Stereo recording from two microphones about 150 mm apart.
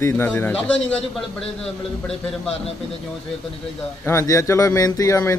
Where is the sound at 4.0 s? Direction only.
20° left (ahead or behind).